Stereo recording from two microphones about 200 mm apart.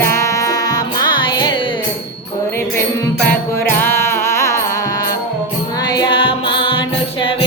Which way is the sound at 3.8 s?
10° left (ahead or behind).